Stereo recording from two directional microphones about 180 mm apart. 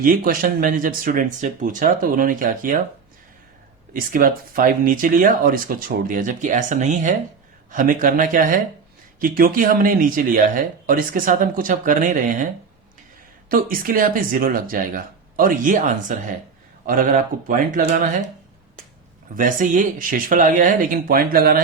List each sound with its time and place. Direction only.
0.0 s speech: 50° right (ahead or behind)
3.9 s speech: 50° right (ahead or behind)
13.5 s speech: 50° right (ahead or behind)
19.4 s speech: 50° right (ahead or behind)